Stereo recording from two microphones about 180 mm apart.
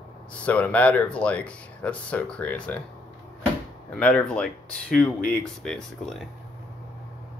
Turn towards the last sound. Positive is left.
turn(degrees=5)  # may be behind; listen again after turning